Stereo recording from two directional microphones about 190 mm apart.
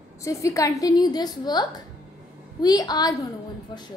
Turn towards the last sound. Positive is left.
turn(degrees=20)  # may be behind; listen again after turning